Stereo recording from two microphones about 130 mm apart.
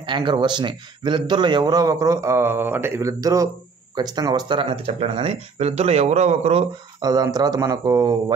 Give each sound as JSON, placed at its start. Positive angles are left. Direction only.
{"t": 0.0, "sound": "speech", "side_deg": -35}
{"t": 7.0, "sound": "speech", "side_deg": -30}